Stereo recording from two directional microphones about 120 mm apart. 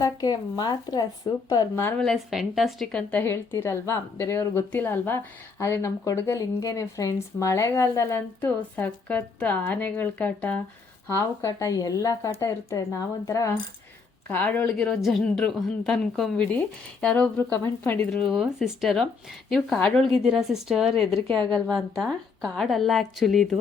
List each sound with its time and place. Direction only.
0.0 s speech: 35° left (ahead or behind)
1.7 s a woman's voice: 20° left (ahead or behind)
2.0 s a woman's voice: centre (ahead or behind)
11.2 s a woman's voice: 30° left (ahead or behind)
14.3 s speech: 15° left (ahead or behind)
14.7 s a woman's voice: 5° left (ahead or behind)
18.1 s a woman's voice: centre (ahead or behind)